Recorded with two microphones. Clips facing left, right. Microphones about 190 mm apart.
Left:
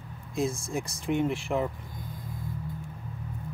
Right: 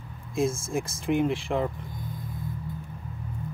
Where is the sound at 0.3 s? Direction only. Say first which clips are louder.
Right 3 dB; centre (ahead or behind).